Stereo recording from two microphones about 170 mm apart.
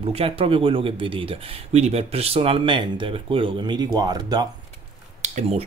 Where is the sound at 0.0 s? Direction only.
35° right (ahead or behind).